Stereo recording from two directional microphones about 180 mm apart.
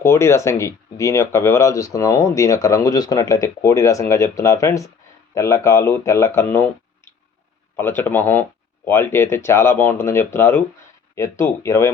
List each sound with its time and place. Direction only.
0.0 s speech: 15° left (ahead or behind)